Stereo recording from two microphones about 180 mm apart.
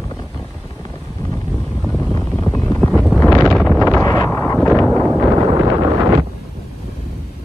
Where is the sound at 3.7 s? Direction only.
15° left (ahead or behind).